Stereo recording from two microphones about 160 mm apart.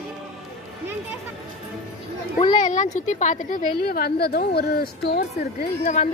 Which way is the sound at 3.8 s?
70° left (ahead or behind).